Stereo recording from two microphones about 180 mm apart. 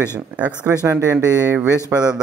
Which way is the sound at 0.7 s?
15° right (ahead or behind).